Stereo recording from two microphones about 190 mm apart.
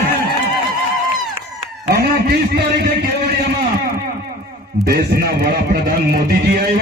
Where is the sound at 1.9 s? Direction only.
55° right (ahead or behind).